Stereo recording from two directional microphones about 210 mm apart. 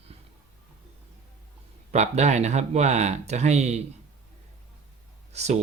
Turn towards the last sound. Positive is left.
turn(degrees=-30)  # may be behind; listen again after turning